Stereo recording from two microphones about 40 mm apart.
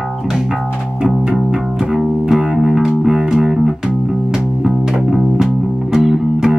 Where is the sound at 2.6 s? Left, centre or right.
Centre.